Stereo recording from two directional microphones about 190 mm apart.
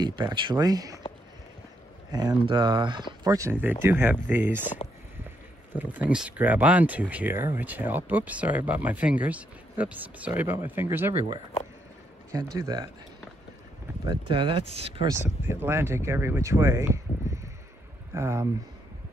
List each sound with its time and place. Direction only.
0.0 s speech: 25° right (ahead or behind)
2.1 s speech: 20° right (ahead or behind)
5.7 s speech: 10° right (ahead or behind)
12.5 s speech: 20° right (ahead or behind)
14.0 s speech: 25° right (ahead or behind)
15.0 s speech: 10° right (ahead or behind)
18.1 s speech: 15° right (ahead or behind)